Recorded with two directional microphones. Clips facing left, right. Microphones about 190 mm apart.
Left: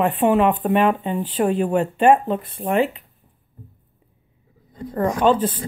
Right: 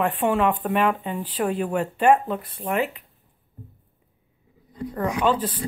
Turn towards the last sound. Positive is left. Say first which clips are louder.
# left 5 dB
turn(degrees=25)  # may be behind; listen again after turning